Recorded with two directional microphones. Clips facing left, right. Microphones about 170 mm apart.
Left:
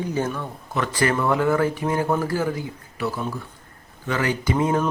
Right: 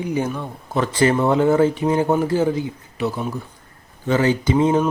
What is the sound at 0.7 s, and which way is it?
Speech, 30° right (ahead or behind).